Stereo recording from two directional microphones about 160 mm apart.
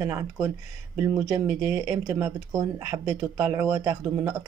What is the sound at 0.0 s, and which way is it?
Speech, 15° right (ahead or behind).